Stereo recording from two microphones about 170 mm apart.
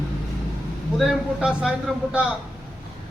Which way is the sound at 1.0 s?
Centre (ahead or behind).